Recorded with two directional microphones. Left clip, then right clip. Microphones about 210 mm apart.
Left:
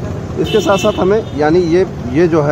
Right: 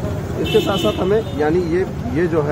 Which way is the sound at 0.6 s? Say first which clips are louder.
Left 6 dB; 50° left (ahead or behind).